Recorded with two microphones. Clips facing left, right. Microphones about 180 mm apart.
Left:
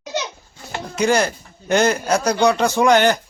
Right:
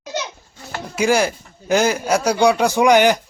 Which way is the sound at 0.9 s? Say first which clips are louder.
Right 1 dB; 5° right (ahead or behind).